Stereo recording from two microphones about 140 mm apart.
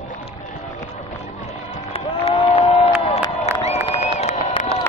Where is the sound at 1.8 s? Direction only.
45° left (ahead or behind).